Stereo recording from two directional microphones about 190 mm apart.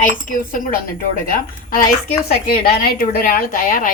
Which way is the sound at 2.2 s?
55° left (ahead or behind).